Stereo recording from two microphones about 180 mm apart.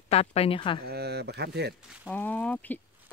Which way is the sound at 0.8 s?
60° right (ahead or behind).